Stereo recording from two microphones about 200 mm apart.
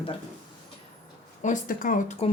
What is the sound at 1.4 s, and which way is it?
Speech, 45° left (ahead or behind).